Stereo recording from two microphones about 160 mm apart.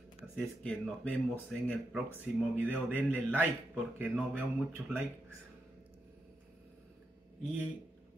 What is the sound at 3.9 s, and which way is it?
Speech, 10° right (ahead or behind).